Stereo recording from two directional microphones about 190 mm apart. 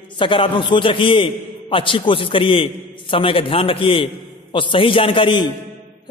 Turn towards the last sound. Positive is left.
turn(degrees=25)  # may be behind; listen again after turning